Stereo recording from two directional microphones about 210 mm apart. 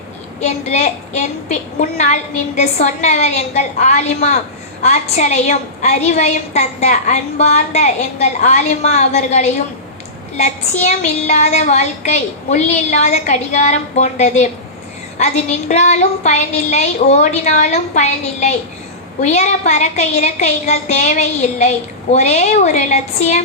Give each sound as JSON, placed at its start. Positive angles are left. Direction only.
{"t": 0.3, "sound": "a woman's voice", "side_deg": 30}